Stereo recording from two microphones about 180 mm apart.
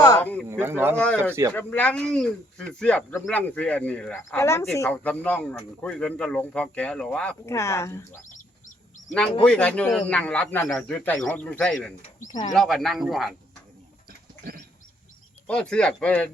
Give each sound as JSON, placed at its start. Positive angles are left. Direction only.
{"t": 0.2, "sound": "speech", "side_deg": 10}
{"t": 0.6, "sound": "speech", "side_deg": -10}
{"t": 0.9, "sound": "speech", "side_deg": 5}
{"t": 1.3, "sound": "speech", "side_deg": -15}
{"t": 1.5, "sound": "speech", "side_deg": 10}
{"t": 4.4, "sound": "speech", "side_deg": 15}
{"t": 9.4, "sound": "a man's voice", "side_deg": 5}
{"t": 12.0, "sound": "speech", "side_deg": 45}
{"t": 12.5, "sound": "a man's voice", "side_deg": 0}
{"t": 15.4, "sound": "a man's voice", "side_deg": 5}